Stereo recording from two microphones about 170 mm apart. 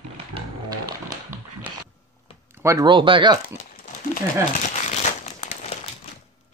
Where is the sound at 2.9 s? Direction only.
30° right (ahead or behind).